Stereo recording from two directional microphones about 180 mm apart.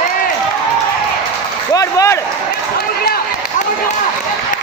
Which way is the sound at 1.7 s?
20° left (ahead or behind).